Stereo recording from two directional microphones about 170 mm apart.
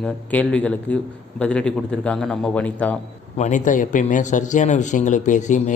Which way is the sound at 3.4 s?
45° left (ahead or behind).